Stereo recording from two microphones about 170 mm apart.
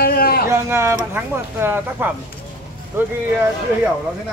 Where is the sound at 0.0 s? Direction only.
65° left (ahead or behind).